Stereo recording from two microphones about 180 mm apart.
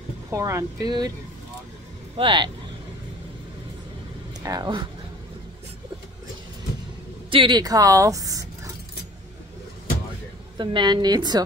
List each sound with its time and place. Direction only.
0.3 s a woman's voice: 15° right (ahead or behind)
2.1 s a woman's voice: 25° right (ahead or behind)
4.4 s speech: 20° right (ahead or behind)
7.2 s a woman's voice: 30° right (ahead or behind)
10.6 s a woman's voice: 25° right (ahead or behind)